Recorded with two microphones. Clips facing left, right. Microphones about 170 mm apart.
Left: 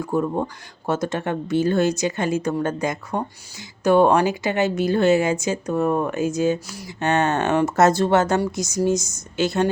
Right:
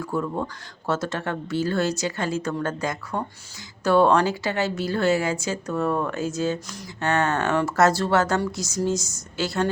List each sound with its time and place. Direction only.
0.0 s a woman's voice: 20° left (ahead or behind)